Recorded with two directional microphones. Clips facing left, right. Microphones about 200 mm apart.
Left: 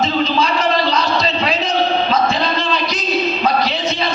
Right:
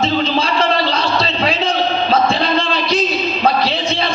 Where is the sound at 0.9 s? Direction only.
30° right (ahead or behind).